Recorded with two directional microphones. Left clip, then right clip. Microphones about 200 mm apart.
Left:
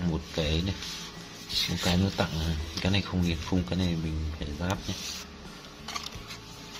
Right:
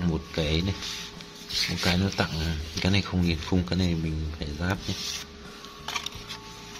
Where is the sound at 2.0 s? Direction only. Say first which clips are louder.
Right 2 dB; 15° right (ahead or behind).